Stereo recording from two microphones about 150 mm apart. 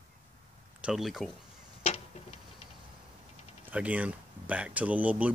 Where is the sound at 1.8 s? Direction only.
45° left (ahead or behind).